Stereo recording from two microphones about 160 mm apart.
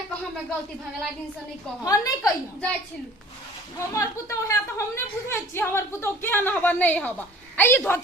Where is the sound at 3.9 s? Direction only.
20° left (ahead or behind).